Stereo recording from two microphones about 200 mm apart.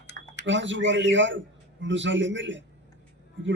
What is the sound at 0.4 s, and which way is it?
A man's voice, 65° right (ahead or behind).